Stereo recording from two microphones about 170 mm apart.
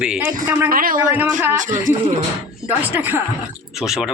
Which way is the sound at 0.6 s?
55° right (ahead or behind).